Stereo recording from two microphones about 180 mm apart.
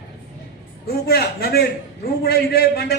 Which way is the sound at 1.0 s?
60° left (ahead or behind).